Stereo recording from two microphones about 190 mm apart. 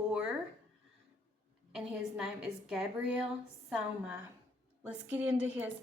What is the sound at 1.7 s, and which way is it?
Speech, 5° right (ahead or behind).